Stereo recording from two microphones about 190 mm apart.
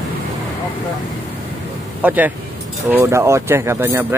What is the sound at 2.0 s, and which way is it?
Speech, 10° right (ahead or behind).